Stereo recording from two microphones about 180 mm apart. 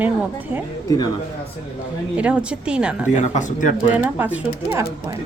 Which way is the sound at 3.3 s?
45° left (ahead or behind).